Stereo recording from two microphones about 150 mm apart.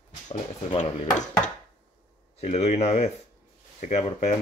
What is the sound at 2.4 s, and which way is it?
Speech, 50° left (ahead or behind).